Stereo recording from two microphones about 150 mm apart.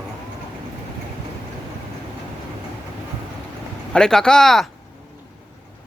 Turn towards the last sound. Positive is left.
turn(degrees=0)  # may be behind; listen again after turning